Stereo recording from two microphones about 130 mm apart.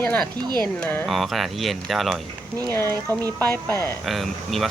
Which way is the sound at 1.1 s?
Centre (ahead or behind).